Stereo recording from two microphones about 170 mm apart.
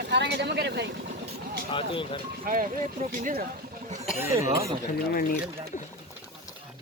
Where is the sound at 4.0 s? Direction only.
5° right (ahead or behind).